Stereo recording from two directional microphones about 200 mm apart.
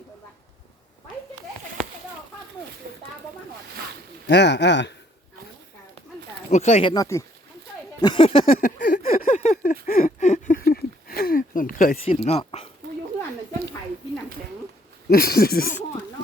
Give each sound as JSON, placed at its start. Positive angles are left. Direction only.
{"t": 2.8, "sound": "a sound", "side_deg": -50}
{"t": 4.3, "sound": "speech", "side_deg": 60}
{"t": 6.5, "sound": "speech", "side_deg": 35}
{"t": 6.9, "sound": "speech", "side_deg": 15}
{"t": 8.5, "sound": "a sound", "side_deg": 40}
{"t": 12.0, "sound": "speech", "side_deg": 30}
{"t": 15.1, "sound": "speech", "side_deg": 50}